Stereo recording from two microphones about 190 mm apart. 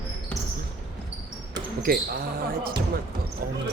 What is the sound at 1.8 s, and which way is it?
Speech, 50° right (ahead or behind).